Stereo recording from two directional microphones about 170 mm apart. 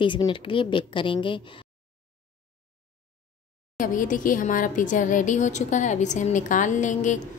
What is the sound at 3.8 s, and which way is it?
A woman's voice, 50° left (ahead or behind).